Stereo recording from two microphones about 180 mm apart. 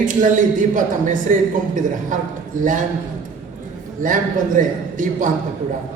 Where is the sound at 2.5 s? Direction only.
45° right (ahead or behind).